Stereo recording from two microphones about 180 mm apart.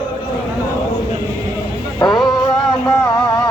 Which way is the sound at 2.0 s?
20° left (ahead or behind).